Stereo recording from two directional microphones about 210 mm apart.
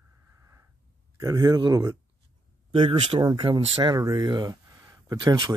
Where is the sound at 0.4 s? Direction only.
15° right (ahead or behind).